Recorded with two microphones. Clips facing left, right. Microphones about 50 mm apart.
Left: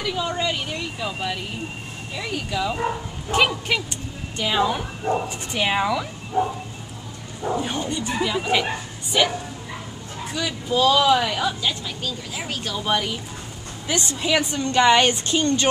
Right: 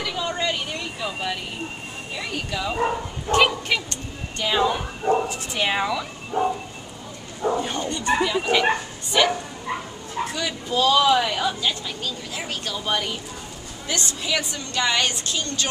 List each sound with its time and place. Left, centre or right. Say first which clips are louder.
0.0 s a woman's voice: left 1 dB; centre
7.5 s a woman's voice: even; centre
10.3 s a woman's voice: left 4 dB; centre
13.8 s a woman's voice: left 3 dB; centre